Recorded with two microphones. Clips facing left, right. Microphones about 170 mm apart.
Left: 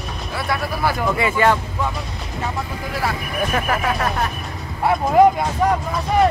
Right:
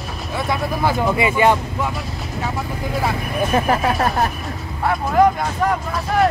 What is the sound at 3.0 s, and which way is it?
Speech, 30° right (ahead or behind).